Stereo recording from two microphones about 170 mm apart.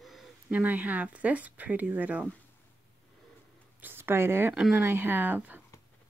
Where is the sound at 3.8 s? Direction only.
15° right (ahead or behind).